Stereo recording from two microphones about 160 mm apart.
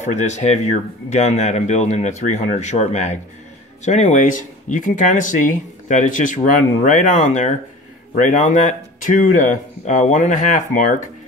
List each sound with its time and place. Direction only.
0.0 s speech: 45° left (ahead or behind)